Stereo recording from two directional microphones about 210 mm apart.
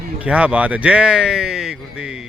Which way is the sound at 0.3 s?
5° right (ahead or behind).